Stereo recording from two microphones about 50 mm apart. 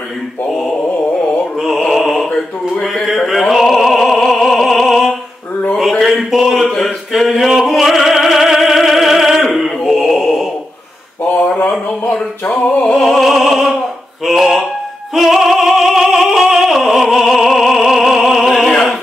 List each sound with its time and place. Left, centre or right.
0.5 s mantra: centre
1.8 s music: centre
3.3 s opera: centre
5.8 s a sound: centre
6.7 s music: centre
11.2 s a sound: left
12.1 s music: left
12.9 s opera: centre
14.2 s a sound: centre
15.1 s opera: centre